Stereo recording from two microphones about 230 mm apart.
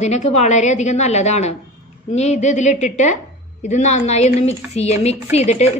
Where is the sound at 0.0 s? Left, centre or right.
Left.